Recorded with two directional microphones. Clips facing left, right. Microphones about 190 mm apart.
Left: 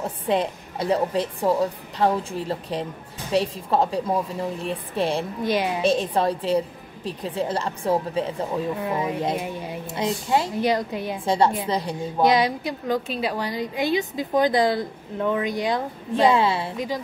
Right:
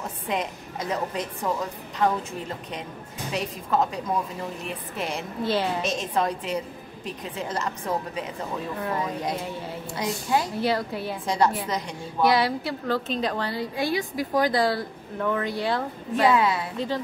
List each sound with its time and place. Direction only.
0.3 s a woman's voice: 30° left (ahead or behind)
5.4 s a woman's voice: 15° left (ahead or behind)
5.8 s a woman's voice: 30° left (ahead or behind)
8.8 s a woman's voice: 15° left (ahead or behind)
11.2 s a woman's voice: 30° left (ahead or behind)
12.2 s a woman's voice: 20° left (ahead or behind)
16.7 s a woman's voice: 15° left (ahead or behind)